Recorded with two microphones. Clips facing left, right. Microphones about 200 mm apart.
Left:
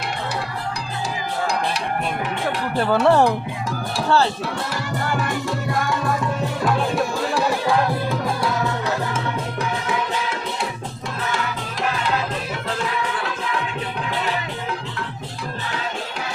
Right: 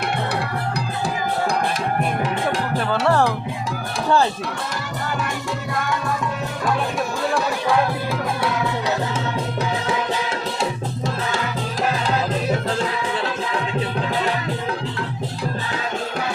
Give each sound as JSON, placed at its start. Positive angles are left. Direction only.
{"t": 2.9, "sound": "speech", "side_deg": 15}